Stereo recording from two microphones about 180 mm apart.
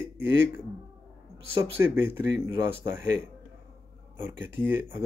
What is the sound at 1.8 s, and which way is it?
Speech, 15° right (ahead or behind).